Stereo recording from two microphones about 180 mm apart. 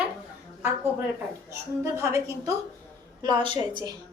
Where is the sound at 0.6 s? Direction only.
10° right (ahead or behind).